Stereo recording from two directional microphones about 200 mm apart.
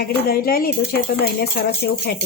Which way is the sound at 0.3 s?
50° left (ahead or behind).